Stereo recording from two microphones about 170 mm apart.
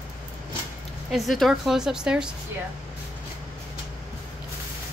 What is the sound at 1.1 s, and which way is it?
A woman's voice, centre (ahead or behind).